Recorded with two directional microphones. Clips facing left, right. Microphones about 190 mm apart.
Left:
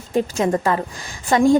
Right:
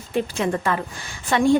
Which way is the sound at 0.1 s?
40° left (ahead or behind).